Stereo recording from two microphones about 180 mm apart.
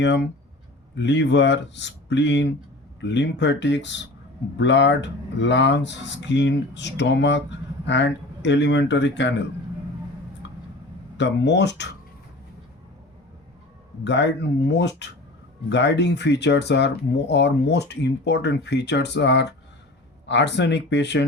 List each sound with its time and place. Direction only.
0.0 s speech: 80° left
10.4 s a sound: 90° left
11.2 s speech: 75° left (ahead or behind)
14.0 s speech: 75° left (ahead or behind)